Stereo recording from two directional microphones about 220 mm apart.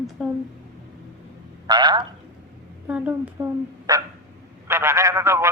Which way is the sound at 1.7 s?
20° right (ahead or behind).